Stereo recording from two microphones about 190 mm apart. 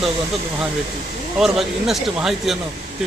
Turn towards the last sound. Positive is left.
turn(degrees=0)  # may be behind; listen again after turning